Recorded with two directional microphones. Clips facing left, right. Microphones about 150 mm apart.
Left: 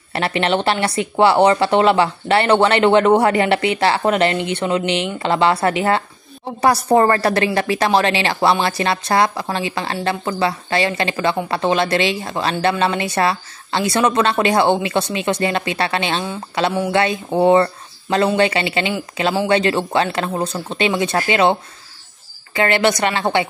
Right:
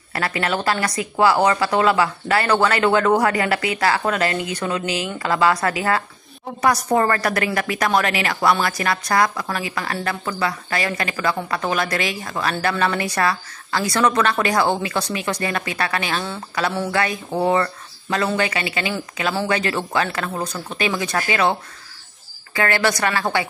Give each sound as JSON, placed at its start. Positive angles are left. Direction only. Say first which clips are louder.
{"t": 0.1, "sound": "speech", "louder": "left 4 dB", "side_deg": 25}